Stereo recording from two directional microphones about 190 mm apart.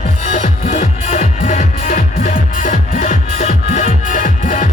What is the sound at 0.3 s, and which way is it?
Music, 40° left (ahead or behind).